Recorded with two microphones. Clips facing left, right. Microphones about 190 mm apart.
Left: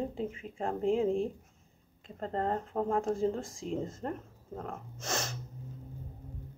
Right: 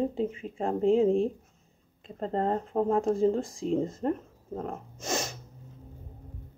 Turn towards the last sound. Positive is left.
turn(degrees=-15)  # may be behind; listen again after turning